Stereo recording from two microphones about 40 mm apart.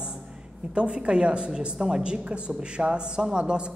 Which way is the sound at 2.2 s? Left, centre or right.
Right.